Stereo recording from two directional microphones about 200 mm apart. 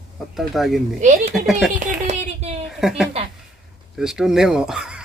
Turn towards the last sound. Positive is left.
turn(degrees=-5)  # may be behind; listen again after turning